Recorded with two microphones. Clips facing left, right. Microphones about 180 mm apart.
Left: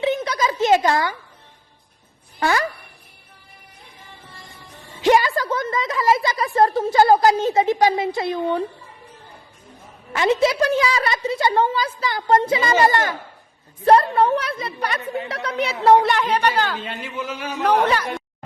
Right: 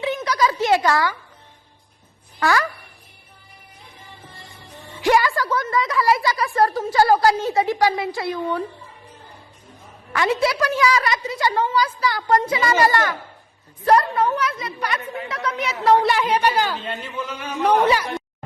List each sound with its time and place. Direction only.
0.0 s a sound: 25° left (ahead or behind)
2.4 s a woman's voice: 20° left (ahead or behind)
4.9 s a woman's voice: 20° left (ahead or behind)
10.1 s a woman's voice: 20° left (ahead or behind)
16.0 s a woman's voice: 10° right (ahead or behind)
16.7 s a man's voice: 5° left (ahead or behind)
17.8 s a woman's voice: 10° right (ahead or behind)